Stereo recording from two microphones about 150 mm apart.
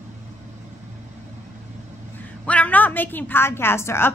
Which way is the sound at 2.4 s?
10° left (ahead or behind).